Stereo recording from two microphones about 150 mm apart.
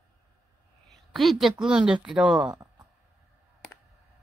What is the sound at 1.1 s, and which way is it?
Speech, centre (ahead or behind).